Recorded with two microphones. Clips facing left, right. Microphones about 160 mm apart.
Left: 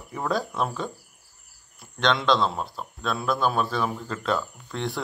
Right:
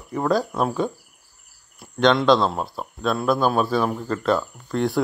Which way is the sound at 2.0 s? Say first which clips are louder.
Right 6 dB; 5° right (ahead or behind).